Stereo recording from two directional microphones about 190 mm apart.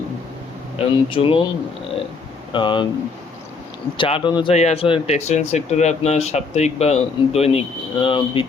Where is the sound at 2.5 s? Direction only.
25° left (ahead or behind).